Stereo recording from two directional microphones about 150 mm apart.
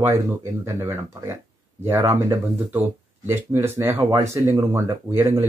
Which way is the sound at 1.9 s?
20° right (ahead or behind).